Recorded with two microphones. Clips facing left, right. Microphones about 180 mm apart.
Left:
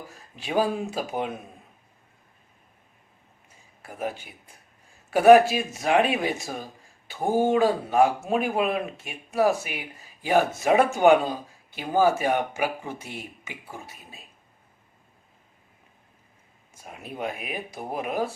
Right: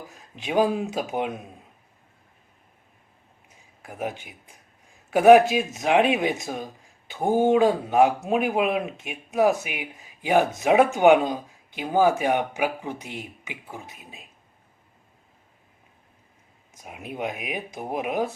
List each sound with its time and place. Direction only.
0.7 s speech: 15° right (ahead or behind)
3.8 s speech: 10° right (ahead or behind)
16.7 s speech: 15° right (ahead or behind)